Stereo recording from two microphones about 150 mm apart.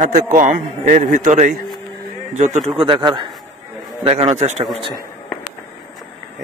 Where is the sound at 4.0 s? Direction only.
40° right (ahead or behind).